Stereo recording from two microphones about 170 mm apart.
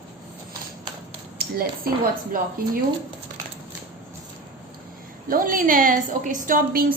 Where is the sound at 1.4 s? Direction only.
60° right (ahead or behind).